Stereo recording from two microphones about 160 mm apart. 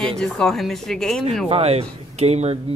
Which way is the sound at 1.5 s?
40° right (ahead or behind).